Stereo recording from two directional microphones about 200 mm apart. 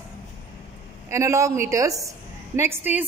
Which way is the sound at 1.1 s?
15° right (ahead or behind).